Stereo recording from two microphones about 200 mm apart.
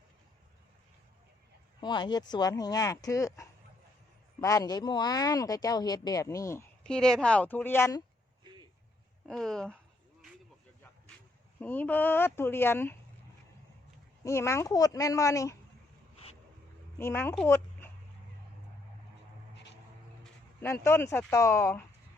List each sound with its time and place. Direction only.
1.8 s speech: 20° left (ahead or behind)
9.2 s speech: 5° left (ahead or behind)
11.6 s speech: 10° left (ahead or behind)
14.3 s speech: 15° left (ahead or behind)
17.0 s speech: 10° left (ahead or behind)
19.5 s a sound: 60° left (ahead or behind)
20.8 s speech: 15° left (ahead or behind)